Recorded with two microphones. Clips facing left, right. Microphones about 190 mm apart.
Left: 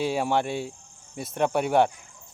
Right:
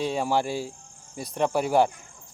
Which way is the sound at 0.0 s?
5° left (ahead or behind).